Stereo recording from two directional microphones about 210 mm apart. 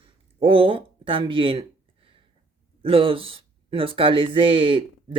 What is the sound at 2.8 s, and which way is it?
Speech, 25° right (ahead or behind).